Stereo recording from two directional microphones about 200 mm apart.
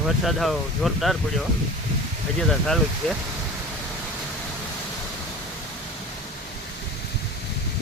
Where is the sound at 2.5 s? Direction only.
Centre (ahead or behind).